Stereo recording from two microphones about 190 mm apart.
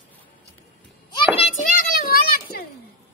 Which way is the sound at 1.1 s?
30° left (ahead or behind).